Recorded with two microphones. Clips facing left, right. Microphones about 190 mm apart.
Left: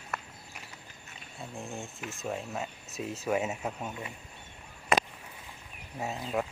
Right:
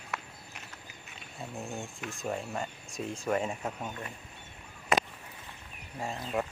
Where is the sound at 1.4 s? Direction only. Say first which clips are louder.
Right 1 dB; centre (ahead or behind).